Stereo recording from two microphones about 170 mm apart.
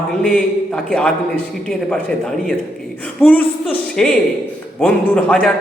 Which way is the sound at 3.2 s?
10° left (ahead or behind).